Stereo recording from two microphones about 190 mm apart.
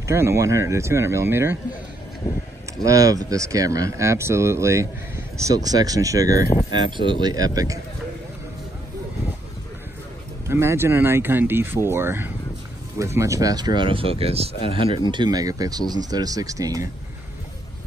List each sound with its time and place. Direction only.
0.0 s speech: 15° right (ahead or behind)
2.8 s speech: 20° right (ahead or behind)
10.5 s speech: 15° right (ahead or behind)